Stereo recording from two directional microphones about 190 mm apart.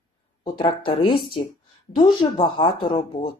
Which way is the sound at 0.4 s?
25° left (ahead or behind).